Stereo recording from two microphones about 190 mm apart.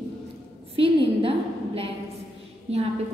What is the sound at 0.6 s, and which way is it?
Speech, 30° right (ahead or behind).